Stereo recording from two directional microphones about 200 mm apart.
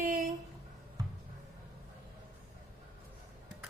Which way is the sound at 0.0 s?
40° right (ahead or behind).